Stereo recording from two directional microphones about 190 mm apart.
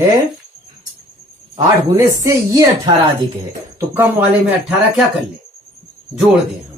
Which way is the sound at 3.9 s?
10° right (ahead or behind).